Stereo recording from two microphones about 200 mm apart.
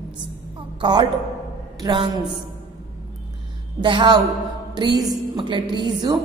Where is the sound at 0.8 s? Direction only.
20° right (ahead or behind).